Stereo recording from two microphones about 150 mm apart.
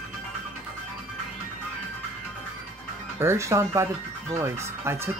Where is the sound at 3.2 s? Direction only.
20° right (ahead or behind).